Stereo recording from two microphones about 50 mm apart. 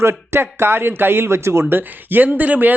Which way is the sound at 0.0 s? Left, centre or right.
Right.